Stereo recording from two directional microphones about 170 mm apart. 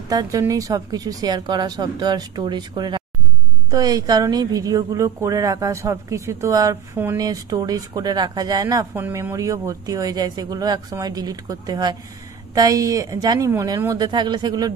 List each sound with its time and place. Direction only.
0.1 s speech: 20° right (ahead or behind)